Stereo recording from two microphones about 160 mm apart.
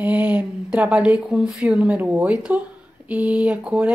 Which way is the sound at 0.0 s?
10° right (ahead or behind).